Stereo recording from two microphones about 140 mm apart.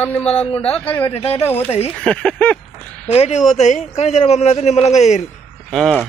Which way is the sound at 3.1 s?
50° left (ahead or behind).